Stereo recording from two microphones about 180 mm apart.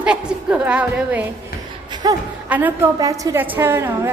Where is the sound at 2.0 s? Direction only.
25° right (ahead or behind).